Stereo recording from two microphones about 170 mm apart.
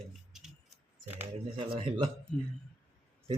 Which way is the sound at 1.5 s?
30° right (ahead or behind).